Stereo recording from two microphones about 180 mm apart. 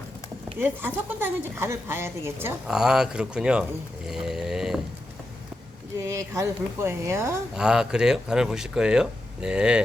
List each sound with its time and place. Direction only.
0.6 s a woman's voice: 10° right (ahead or behind)
6.0 s speech: 20° right (ahead or behind)
7.5 s a woman's voice: 5° right (ahead or behind)